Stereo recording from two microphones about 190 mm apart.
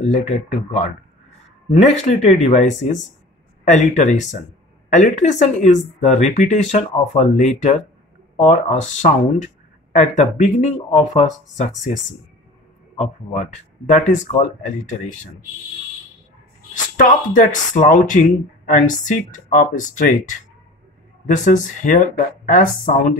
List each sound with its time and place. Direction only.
0.0 s speech: 35° left (ahead or behind)
12.9 s speech: 35° left (ahead or behind)
16.7 s speech: 45° left (ahead or behind)